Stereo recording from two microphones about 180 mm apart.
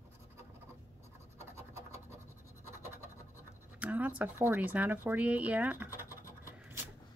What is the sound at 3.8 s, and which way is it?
Speech, 10° right (ahead or behind).